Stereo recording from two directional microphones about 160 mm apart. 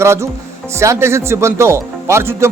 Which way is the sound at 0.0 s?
15° right (ahead or behind).